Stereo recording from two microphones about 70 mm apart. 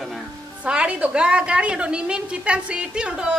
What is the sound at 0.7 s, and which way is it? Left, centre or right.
A woman's voice, centre.